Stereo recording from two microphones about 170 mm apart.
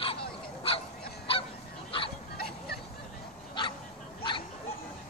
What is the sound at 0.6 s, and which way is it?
Goose, 35° left (ahead or behind).